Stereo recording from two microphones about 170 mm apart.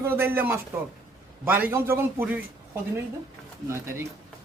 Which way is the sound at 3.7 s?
15° right (ahead or behind).